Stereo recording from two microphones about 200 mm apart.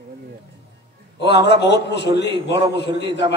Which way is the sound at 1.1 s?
60° left (ahead or behind).